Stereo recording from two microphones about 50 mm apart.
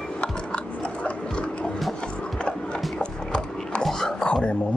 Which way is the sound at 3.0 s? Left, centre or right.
Left.